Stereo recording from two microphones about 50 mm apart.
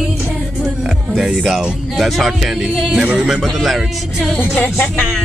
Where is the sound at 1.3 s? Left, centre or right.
Centre.